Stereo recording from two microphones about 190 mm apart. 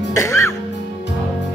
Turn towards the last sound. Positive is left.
turn(degrees=15)  # may be behind; listen again after turning